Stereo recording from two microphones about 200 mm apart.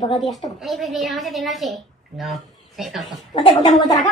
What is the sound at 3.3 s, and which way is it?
Speech, 20° left (ahead or behind).